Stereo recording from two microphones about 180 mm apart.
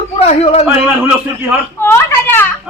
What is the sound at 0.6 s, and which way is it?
Speech, 5° right (ahead or behind).